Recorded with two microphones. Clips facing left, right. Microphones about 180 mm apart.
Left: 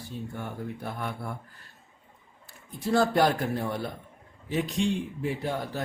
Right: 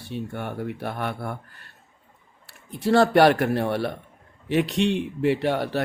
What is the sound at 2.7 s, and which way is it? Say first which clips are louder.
Speech: right 5 dB; 70° right (ahead or behind).